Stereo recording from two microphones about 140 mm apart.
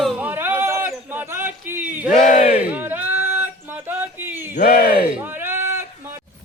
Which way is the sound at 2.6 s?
10° right (ahead or behind).